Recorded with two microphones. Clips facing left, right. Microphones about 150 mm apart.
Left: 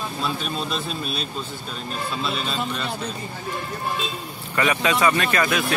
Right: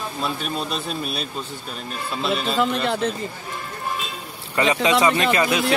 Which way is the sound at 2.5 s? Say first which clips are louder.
Right 6 dB; 85° right.